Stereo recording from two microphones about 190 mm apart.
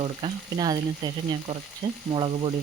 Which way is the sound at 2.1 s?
25° right (ahead or behind).